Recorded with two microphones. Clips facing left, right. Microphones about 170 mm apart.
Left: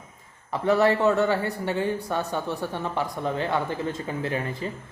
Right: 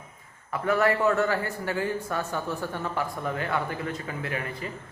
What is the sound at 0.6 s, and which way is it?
Speech, 20° left (ahead or behind).